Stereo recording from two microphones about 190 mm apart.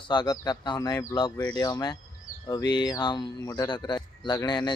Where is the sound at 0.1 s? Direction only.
20° left (ahead or behind).